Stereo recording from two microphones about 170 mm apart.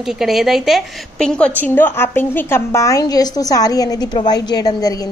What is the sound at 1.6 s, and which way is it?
A woman's voice, 10° left (ahead or behind).